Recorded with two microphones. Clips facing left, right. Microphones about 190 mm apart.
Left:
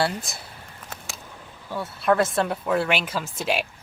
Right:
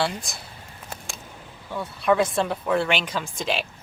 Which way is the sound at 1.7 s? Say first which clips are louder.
Even; 5° left (ahead or behind).